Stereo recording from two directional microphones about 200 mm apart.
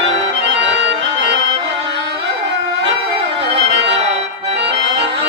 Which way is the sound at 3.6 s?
60° right (ahead or behind).